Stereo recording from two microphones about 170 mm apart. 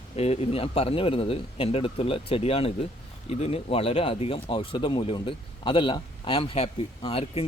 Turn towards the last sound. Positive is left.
turn(degrees=35)  # may be behind; listen again after turning